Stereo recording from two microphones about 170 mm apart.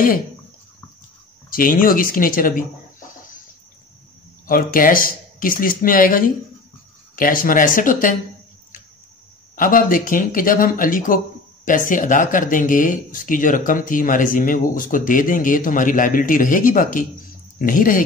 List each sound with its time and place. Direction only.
1.5 s speech: 55° left (ahead or behind)
4.5 s speech: 55° left (ahead or behind)
9.6 s speech: 55° left (ahead or behind)